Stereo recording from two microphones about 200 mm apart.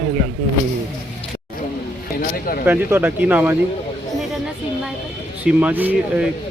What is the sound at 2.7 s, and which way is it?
Speech, 10° right (ahead or behind).